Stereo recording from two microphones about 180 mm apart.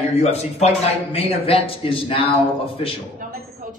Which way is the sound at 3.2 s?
60° right (ahead or behind).